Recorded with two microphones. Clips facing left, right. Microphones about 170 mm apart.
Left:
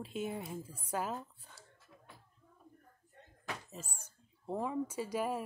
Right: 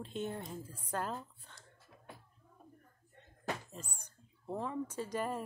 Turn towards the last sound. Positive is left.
turn(degrees=10)  # may be behind; listen again after turning